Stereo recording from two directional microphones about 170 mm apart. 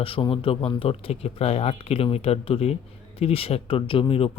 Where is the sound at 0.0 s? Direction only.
30° left (ahead or behind).